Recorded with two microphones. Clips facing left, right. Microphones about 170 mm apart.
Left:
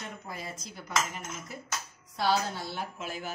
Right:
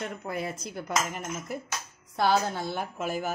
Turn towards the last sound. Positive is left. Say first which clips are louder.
# right 6 dB
turn(degrees=-45)  # may be behind; listen again after turning